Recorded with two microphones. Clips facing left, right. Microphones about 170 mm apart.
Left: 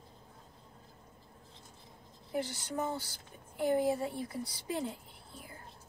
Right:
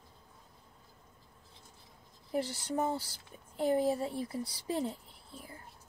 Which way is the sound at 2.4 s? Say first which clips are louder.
Right 3 dB; 35° right (ahead or behind).